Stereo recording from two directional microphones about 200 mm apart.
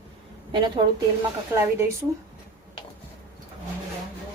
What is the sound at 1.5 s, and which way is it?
Speech, 10° right (ahead or behind).